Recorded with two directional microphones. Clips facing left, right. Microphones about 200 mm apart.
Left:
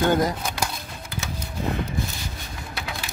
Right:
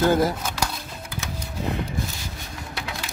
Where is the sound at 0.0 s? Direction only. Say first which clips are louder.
Right 1 dB; 5° right (ahead or behind).